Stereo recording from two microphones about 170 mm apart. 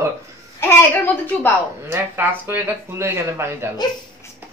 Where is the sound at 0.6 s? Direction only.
15° left (ahead or behind).